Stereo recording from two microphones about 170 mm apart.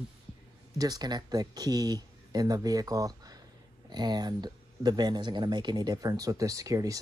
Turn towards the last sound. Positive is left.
turn(degrees=-20)  # may be behind; listen again after turning